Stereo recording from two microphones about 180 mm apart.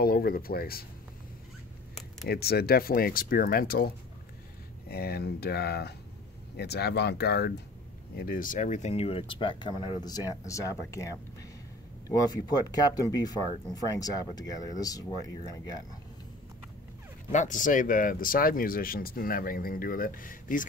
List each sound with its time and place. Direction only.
0.0 s speech: 55° left (ahead or behind)
2.2 s speech: 60° left (ahead or behind)
8.2 s speech: 50° left (ahead or behind); by 11.1 s 15° left (ahead or behind)
12.1 s speech: 20° left (ahead or behind)
17.3 s speech: 45° left (ahead or behind)